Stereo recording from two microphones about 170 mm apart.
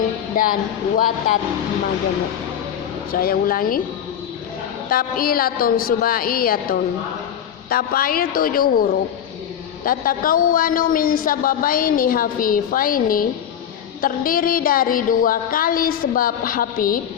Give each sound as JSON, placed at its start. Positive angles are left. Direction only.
{"t": 0.3, "sound": "a woman's voice", "side_deg": 55}
{"t": 3.1, "sound": "a woman's voice", "side_deg": 60}
{"t": 4.9, "sound": "a woman's voice", "side_deg": 60}